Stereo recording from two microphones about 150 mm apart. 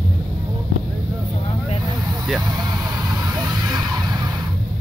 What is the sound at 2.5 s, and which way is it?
Vehicle, 25° right (ahead or behind).